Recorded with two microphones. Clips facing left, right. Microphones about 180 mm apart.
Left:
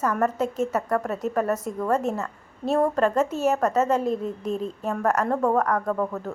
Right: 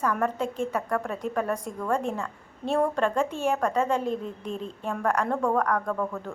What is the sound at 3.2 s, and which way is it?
Speech, 40° left (ahead or behind).